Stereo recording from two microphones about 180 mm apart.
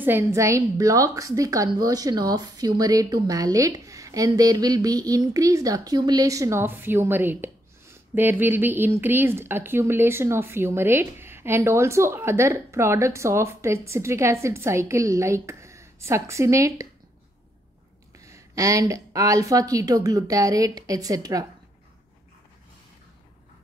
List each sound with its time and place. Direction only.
0.0 s a woman's voice: 15° right (ahead or behind)
18.2 s speech: 15° right (ahead or behind)